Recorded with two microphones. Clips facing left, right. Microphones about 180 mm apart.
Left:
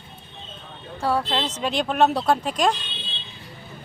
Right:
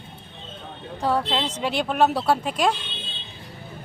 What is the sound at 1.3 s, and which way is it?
Speech, 10° right (ahead or behind).